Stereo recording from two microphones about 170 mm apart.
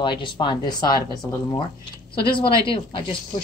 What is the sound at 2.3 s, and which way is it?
Speech, 30° left (ahead or behind).